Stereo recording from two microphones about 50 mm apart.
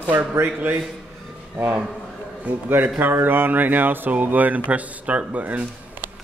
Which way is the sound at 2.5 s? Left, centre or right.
Right.